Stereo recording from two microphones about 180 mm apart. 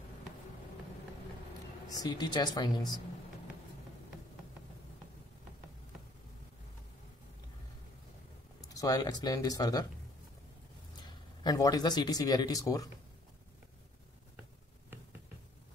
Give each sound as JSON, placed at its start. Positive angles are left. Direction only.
{"t": 1.9, "sound": "speech", "side_deg": 20}
{"t": 8.6, "sound": "speech", "side_deg": 20}
{"t": 11.4, "sound": "speech", "side_deg": 20}